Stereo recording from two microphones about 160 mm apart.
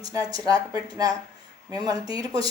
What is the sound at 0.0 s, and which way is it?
Speech, 25° right (ahead or behind).